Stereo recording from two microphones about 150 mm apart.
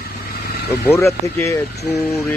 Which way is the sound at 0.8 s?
20° left (ahead or behind).